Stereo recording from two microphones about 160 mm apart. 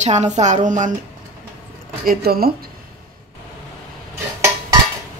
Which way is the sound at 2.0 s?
70° right (ahead or behind).